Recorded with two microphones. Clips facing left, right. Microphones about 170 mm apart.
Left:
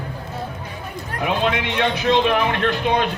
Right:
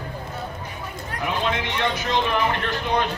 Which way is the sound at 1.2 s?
70° left (ahead or behind).